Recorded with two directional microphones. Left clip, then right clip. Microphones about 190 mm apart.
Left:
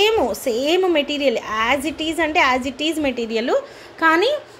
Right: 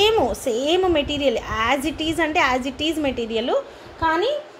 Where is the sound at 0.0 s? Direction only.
10° left (ahead or behind).